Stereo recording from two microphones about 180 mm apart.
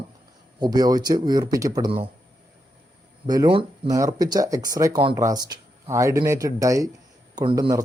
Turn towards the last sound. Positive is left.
turn(degrees=-25)  # may be behind; listen again after turning